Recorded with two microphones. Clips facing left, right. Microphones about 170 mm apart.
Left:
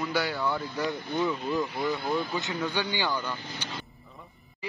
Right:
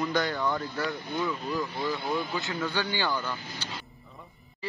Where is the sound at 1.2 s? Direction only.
20° left (ahead or behind).